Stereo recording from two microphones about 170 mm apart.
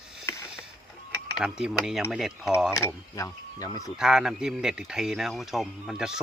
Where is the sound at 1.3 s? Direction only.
5° right (ahead or behind).